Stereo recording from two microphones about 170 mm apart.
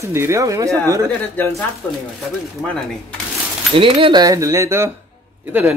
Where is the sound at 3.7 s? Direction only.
30° right (ahead or behind).